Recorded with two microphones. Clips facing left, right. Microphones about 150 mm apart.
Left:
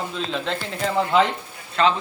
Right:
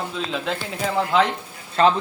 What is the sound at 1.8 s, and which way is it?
Speech, 35° right (ahead or behind).